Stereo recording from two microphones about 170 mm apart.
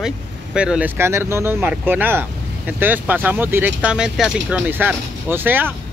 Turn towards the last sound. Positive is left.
turn(degrees=-10)  # may be behind; listen again after turning